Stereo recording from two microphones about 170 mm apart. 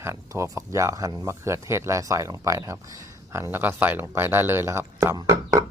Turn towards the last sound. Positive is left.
turn(degrees=-20)  # may be behind; listen again after turning